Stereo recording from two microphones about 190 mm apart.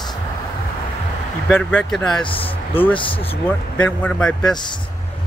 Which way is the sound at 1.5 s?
5° left (ahead or behind).